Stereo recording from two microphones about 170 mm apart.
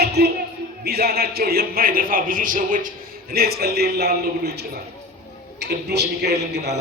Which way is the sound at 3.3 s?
65° right (ahead or behind).